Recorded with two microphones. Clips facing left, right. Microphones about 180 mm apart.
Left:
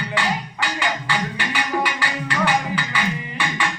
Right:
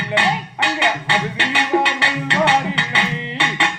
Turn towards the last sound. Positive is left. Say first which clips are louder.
# right 3 dB
turn(degrees=-25)  # may be behind; listen again after turning